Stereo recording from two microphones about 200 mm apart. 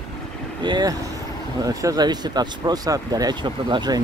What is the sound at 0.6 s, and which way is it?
Speech, 20° right (ahead or behind).